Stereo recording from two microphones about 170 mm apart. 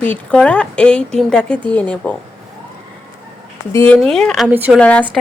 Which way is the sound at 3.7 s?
15° left (ahead or behind).